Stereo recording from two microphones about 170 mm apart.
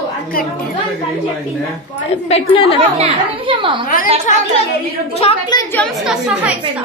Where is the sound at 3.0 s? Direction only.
30° right (ahead or behind).